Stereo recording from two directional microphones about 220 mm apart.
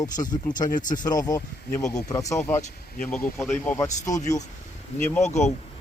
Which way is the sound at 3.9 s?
35° left (ahead or behind).